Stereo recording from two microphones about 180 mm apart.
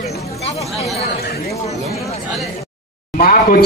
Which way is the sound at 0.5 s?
35° left (ahead or behind).